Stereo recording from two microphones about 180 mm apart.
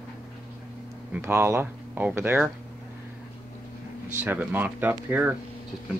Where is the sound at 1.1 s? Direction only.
15° right (ahead or behind).